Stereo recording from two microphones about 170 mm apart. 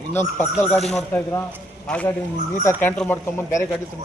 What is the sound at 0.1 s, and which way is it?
Speech, 10° left (ahead or behind).